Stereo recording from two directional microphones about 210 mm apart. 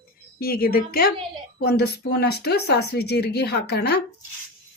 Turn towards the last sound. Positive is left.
turn(degrees=50)  # may be behind; listen again after turning